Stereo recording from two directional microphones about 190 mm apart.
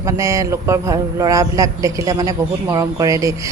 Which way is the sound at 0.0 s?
15° right (ahead or behind).